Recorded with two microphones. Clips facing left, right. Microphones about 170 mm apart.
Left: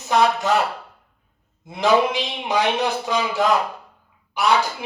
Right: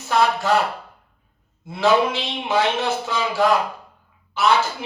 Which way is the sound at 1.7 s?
15° left (ahead or behind).